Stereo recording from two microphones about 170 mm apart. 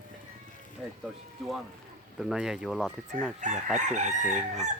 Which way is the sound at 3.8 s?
45° right (ahead or behind).